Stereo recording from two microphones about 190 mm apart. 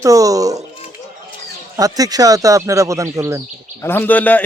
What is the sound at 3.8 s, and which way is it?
Speech, 10° left (ahead or behind).